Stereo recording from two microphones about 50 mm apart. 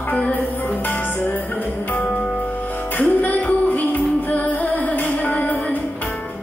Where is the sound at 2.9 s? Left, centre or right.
Left.